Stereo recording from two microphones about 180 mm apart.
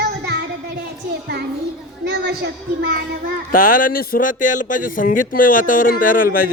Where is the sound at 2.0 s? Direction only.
70° right (ahead or behind).